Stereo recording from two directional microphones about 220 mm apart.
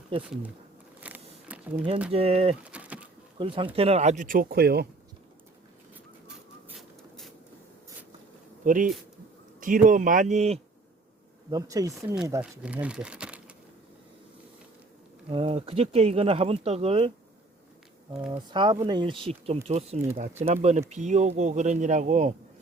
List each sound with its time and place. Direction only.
0.2 s speech: 5° right (ahead or behind)
1.0 s a sound: 5° right (ahead or behind)
2.1 s speech: 25° right (ahead or behind)
2.7 s bird: 5° right (ahead or behind)
3.3 s speech: 25° right (ahead or behind); by 4.9 s 45° right (ahead or behind)
6.2 s a sound: 5° right (ahead or behind)
8.6 s speech: 35° right (ahead or behind)
11.5 s speech: 15° right (ahead or behind)
11.9 s speech: 5° right (ahead or behind)
15.3 s speech: 25° right (ahead or behind)
18.3 s speech: 20° right (ahead or behind)